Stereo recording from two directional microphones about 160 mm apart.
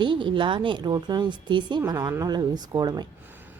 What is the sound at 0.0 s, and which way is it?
Speech, 30° right (ahead or behind).